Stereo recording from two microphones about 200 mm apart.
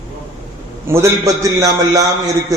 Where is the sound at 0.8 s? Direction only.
15° right (ahead or behind).